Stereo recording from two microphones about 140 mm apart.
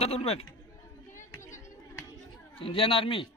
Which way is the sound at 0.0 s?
45° left (ahead or behind).